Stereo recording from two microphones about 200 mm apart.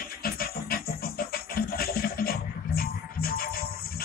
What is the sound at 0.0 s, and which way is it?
Music, 50° left (ahead or behind).